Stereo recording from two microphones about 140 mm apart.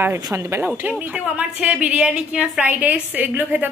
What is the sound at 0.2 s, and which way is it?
A woman's voice, 20° right (ahead or behind).